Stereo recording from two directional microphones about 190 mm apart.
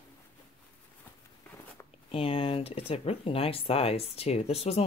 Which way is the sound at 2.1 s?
30° left (ahead or behind).